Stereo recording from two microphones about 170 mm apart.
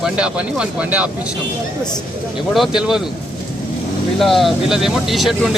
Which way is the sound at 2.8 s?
5° right (ahead or behind).